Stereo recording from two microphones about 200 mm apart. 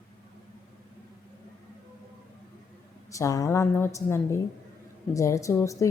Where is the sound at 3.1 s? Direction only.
15° left (ahead or behind).